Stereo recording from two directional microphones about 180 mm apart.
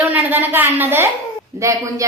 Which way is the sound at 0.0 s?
10° right (ahead or behind).